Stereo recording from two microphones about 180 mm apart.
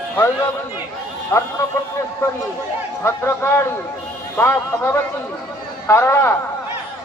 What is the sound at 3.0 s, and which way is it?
Speech, 15° left (ahead or behind).